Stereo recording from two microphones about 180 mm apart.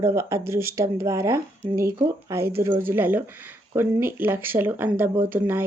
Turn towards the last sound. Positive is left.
turn(degrees=-10)  # may be behind; listen again after turning